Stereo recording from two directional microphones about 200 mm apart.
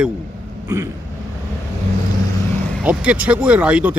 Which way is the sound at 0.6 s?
15° right (ahead or behind).